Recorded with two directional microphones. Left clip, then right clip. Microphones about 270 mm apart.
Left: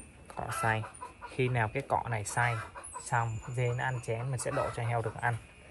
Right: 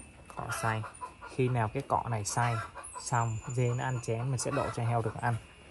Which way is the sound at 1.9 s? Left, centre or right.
Centre.